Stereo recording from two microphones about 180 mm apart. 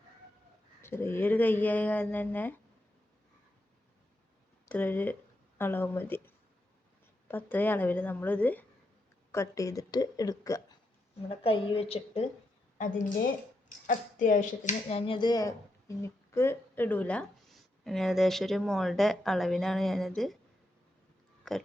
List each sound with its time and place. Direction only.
0.8 s speech: 15° left (ahead or behind)
4.6 s speech: 10° left (ahead or behind)
11.3 s speech: 30° left (ahead or behind)
13.7 s speech: 45° left (ahead or behind); by 20.4 s centre (ahead or behind)
21.5 s a sound: 5° left (ahead or behind)